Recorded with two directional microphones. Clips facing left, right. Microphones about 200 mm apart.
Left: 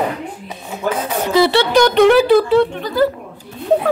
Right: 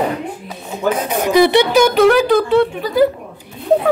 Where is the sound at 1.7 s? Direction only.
5° right (ahead or behind).